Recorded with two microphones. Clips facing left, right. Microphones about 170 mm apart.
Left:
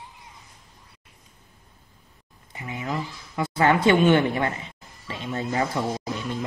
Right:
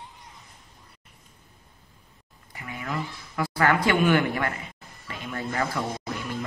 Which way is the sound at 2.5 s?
20° left (ahead or behind).